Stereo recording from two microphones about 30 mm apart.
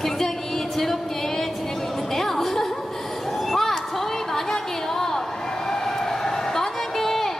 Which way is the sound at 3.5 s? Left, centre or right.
Centre.